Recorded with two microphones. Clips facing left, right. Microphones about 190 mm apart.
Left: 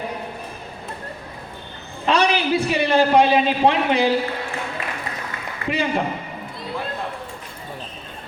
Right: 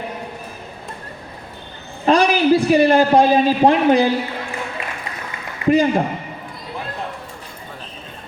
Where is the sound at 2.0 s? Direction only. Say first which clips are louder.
Right 5 dB; 40° right (ahead or behind).